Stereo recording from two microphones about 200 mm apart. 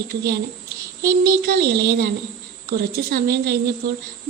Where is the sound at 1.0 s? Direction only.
50° right (ahead or behind).